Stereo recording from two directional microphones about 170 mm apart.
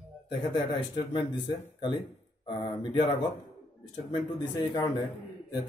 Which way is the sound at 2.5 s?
30° left (ahead or behind).